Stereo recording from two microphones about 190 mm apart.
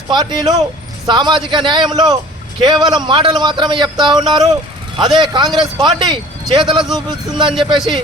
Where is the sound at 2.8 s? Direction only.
25° right (ahead or behind).